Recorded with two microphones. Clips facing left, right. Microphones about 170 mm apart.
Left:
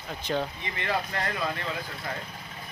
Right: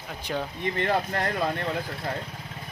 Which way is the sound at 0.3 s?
5° right (ahead or behind).